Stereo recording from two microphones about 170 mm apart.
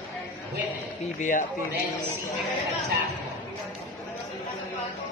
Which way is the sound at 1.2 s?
45° left (ahead or behind).